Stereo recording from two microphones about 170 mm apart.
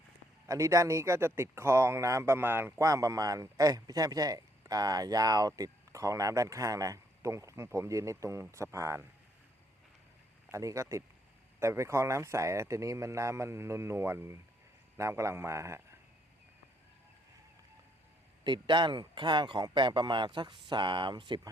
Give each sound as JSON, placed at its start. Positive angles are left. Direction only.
{"t": 0.4, "sound": "speech", "side_deg": -20}
{"t": 10.5, "sound": "speech", "side_deg": -20}
{"t": 18.4, "sound": "speech", "side_deg": -25}